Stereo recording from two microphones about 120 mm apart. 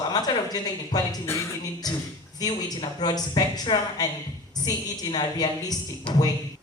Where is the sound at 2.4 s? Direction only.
35° left (ahead or behind).